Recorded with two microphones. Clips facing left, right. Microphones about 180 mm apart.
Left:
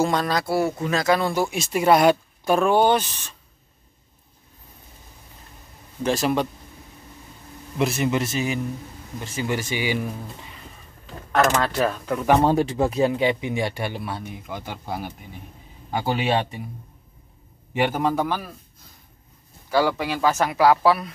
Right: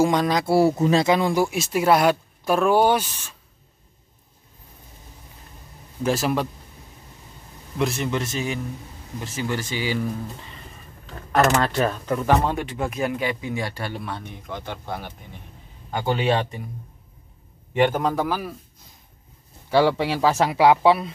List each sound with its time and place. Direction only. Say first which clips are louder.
0.0 s speech: right 2 dB; 15° right (ahead or behind)
1.1 s speech: right 2 dB; 15° right (ahead or behind)
6.0 s speech: left 1 dB; 5° right (ahead or behind)
7.8 s speech: left 2 dB; 5° left (ahead or behind)
9.5 s speech: left 2 dB; 15° left (ahead or behind)
11.3 s speech: right 1 dB; 5° right (ahead or behind)
12.4 s speech: left 6 dB; 35° left (ahead or behind)
13.9 s speech: left 1 dB; 5° left (ahead or behind)
17.7 s speech: right 1 dB; 5° left (ahead or behind)
19.7 s speech: right 3 dB; 25° right (ahead or behind)